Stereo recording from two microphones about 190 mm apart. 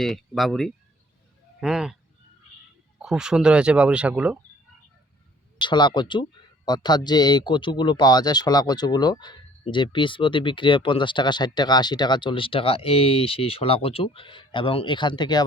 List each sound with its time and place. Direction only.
0.0 s speech: centre (ahead or behind)
3.0 s speech: 5° right (ahead or behind)
5.5 s speech: 25° left (ahead or behind)